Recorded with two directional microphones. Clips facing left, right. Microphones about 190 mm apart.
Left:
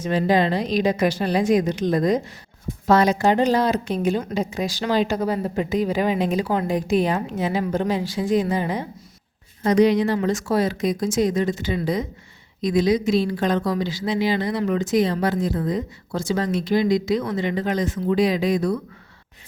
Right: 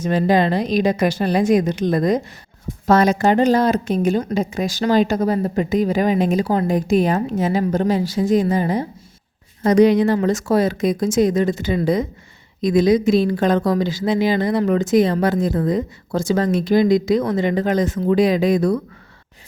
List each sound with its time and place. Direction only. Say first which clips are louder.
0.0 s speech: right 3 dB; 45° right (ahead or behind)